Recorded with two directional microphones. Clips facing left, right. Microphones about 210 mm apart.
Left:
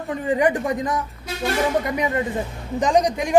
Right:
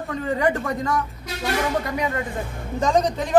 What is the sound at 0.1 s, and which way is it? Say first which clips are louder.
A man's voice: left 3 dB; 15° left (ahead or behind).